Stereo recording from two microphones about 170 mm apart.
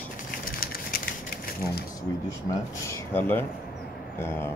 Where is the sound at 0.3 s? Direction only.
60° left (ahead or behind).